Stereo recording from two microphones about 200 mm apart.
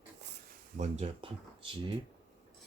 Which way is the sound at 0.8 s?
30° right (ahead or behind).